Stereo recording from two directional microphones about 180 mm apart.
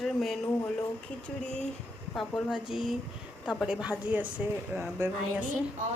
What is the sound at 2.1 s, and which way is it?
A woman's voice, centre (ahead or behind).